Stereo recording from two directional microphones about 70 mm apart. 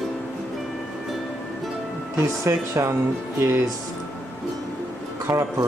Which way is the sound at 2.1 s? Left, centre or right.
Right.